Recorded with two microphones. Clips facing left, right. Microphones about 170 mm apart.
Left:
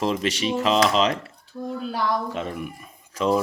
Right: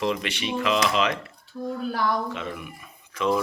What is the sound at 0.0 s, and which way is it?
Speech, 40° left (ahead or behind).